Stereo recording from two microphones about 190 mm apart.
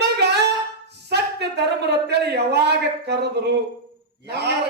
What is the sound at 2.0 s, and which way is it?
Speech, 60° right (ahead or behind).